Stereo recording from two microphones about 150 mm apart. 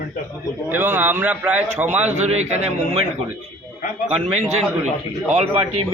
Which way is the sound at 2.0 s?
50° right (ahead or behind).